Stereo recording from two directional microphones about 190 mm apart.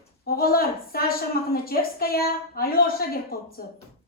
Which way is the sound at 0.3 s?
50° left (ahead or behind).